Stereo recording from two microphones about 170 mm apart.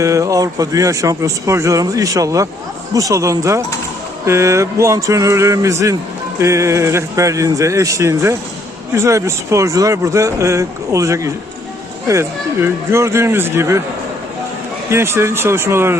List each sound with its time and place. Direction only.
0.0 s speech: 20° right (ahead or behind)
14.8 s speech: 15° right (ahead or behind)